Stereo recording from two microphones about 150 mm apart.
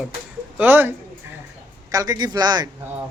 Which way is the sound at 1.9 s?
25° right (ahead or behind).